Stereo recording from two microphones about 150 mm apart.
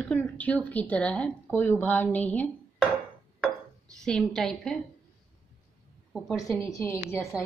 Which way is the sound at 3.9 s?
5° left (ahead or behind).